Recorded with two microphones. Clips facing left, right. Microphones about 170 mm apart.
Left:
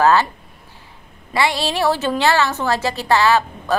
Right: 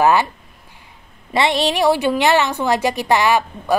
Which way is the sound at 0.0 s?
15° right (ahead or behind).